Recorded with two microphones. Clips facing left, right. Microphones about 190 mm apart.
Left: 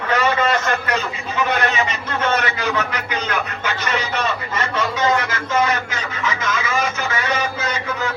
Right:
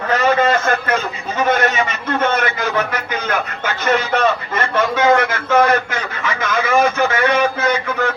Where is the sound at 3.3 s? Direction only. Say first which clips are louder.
Right 3 dB; 50° right (ahead or behind).